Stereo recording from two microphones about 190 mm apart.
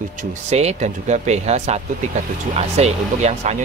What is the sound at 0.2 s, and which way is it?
Speech, 40° right (ahead or behind).